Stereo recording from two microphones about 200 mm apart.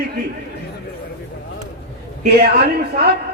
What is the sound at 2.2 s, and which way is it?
Speech, 55° right (ahead or behind).